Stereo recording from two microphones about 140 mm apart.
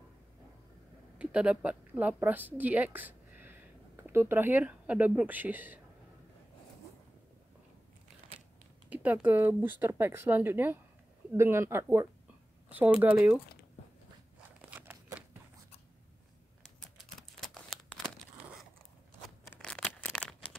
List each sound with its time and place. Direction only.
1.1 s a woman's voice: 10° right (ahead or behind)
8.9 s speech: 10° right (ahead or behind)
14.6 s scissors: 10° right (ahead or behind)
17.4 s crumpling: centre (ahead or behind)
19.6 s a sound: 5° left (ahead or behind)